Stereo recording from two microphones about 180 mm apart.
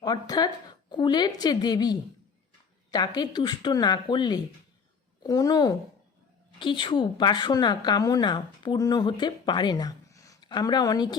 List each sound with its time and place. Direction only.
0.0 s a woman's voice: 20° left (ahead or behind)